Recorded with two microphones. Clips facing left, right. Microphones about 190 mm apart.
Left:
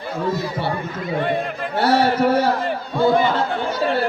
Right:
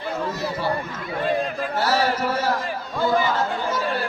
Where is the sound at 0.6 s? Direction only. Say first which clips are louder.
Left 1 dB; 60° left (ahead or behind).